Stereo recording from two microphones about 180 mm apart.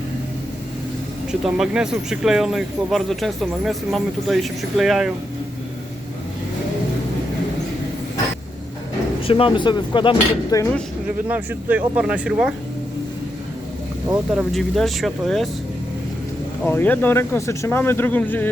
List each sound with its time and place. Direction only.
1.3 s speech: 5° right (ahead or behind)
9.2 s speech: 30° left (ahead or behind)
11.3 s speech: 10° right (ahead or behind)
14.3 s speech: centre (ahead or behind)
16.6 s speech: 10° left (ahead or behind)